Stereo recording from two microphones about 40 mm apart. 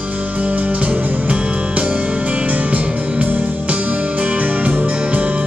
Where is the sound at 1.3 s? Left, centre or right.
Right.